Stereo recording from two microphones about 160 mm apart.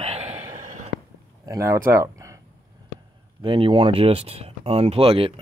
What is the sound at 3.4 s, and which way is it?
Speech, 30° right (ahead or behind).